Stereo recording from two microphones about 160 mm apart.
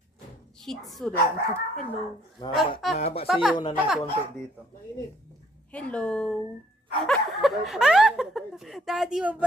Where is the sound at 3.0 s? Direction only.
40° left (ahead or behind).